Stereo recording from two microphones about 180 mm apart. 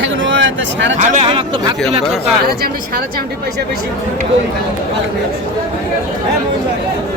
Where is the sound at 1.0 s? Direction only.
40° right (ahead or behind).